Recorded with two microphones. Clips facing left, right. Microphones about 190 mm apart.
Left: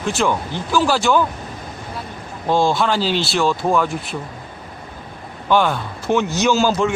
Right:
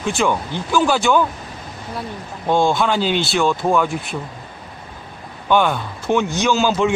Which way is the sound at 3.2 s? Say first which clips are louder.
Right 1 dB; centre (ahead or behind).